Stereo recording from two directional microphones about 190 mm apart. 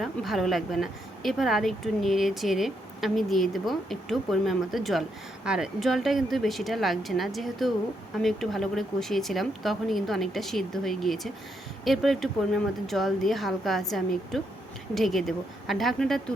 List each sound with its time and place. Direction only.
0.0 s speech: centre (ahead or behind)